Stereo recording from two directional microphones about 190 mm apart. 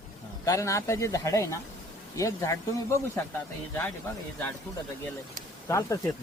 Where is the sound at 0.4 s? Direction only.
15° left (ahead or behind).